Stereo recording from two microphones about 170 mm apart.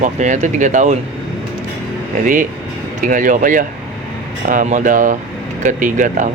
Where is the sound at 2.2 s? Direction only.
50° right (ahead or behind).